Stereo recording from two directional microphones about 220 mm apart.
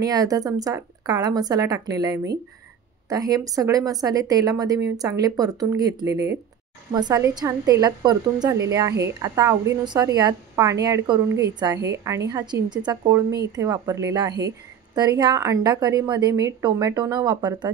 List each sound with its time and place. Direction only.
0.0 s a woman's voice: 15° right (ahead or behind)